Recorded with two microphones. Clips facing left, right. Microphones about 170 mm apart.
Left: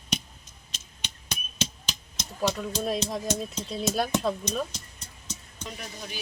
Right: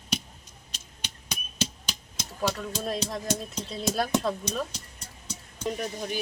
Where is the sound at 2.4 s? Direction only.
5° right (ahead or behind).